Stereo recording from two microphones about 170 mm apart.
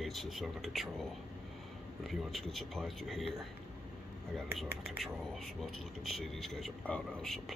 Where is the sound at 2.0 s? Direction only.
Centre (ahead or behind).